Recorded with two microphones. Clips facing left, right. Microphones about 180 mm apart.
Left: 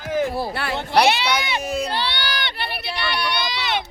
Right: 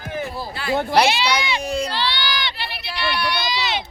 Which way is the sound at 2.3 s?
55° left (ahead or behind).